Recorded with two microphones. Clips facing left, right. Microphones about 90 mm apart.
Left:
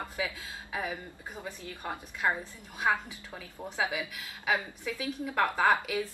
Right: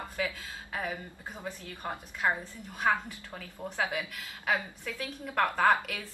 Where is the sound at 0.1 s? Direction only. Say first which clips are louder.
Right 1 dB; 15° left (ahead or behind).